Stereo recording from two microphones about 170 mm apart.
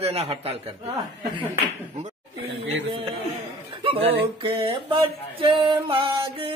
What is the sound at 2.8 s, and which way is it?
A man's voice, 30° right (ahead or behind).